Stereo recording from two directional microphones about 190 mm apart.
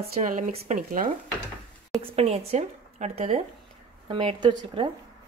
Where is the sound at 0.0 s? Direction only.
40° right (ahead or behind).